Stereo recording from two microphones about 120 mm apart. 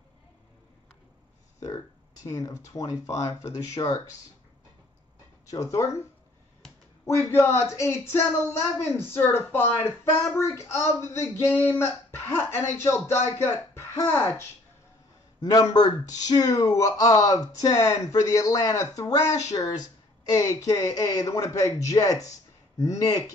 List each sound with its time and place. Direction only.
2.2 s speech: 25° left (ahead or behind)
5.5 s speech: 25° left (ahead or behind)
7.1 s speech: 20° left (ahead or behind)
15.4 s speech: 35° left (ahead or behind)